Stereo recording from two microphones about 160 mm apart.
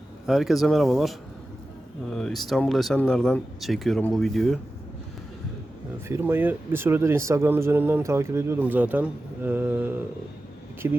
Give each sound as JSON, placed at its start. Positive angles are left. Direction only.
{"t": 0.3, "sound": "speech", "side_deg": 0}
{"t": 6.1, "sound": "speech", "side_deg": -15}